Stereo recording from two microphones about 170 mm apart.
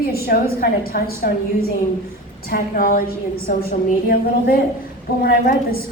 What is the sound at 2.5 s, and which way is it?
Speech, 60° left (ahead or behind).